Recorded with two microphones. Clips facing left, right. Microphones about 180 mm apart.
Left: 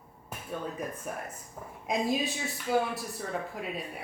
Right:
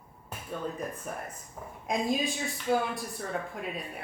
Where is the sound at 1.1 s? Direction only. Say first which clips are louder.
Even; 5° left (ahead or behind).